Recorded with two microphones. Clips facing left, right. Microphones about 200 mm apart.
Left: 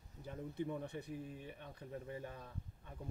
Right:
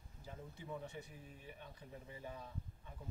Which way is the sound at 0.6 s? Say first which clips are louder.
Left 6 dB; 60° left (ahead or behind).